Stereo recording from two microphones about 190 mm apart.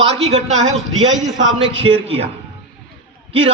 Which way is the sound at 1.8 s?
30° right (ahead or behind).